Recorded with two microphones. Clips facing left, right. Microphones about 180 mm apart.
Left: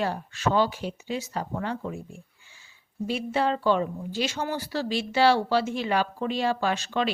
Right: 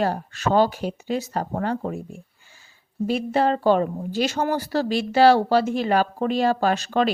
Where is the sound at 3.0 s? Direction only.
45° right (ahead or behind).